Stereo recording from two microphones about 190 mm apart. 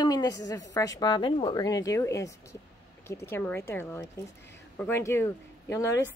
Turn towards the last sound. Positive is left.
turn(degrees=15)  # may be behind; listen again after turning